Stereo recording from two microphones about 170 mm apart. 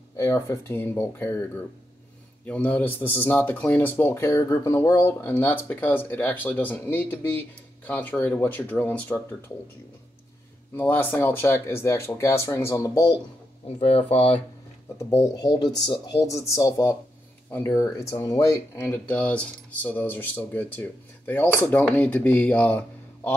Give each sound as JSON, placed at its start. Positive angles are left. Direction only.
{"t": 0.1, "sound": "speech", "side_deg": 15}
{"t": 2.4, "sound": "speech", "side_deg": 10}
{"t": 10.8, "sound": "speech", "side_deg": 10}
{"t": 13.7, "sound": "speech", "side_deg": 35}
{"t": 15.0, "sound": "speech", "side_deg": 15}